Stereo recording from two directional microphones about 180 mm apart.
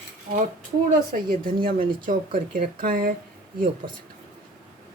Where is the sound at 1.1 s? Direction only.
55° right (ahead or behind).